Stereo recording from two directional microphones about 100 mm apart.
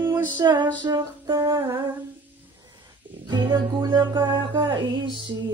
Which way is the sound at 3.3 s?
50° right (ahead or behind).